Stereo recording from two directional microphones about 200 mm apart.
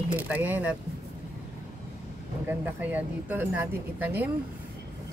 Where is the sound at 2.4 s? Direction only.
10° right (ahead or behind).